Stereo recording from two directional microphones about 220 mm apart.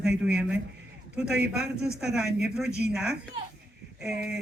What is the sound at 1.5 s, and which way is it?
A man's voice, 5° right (ahead or behind).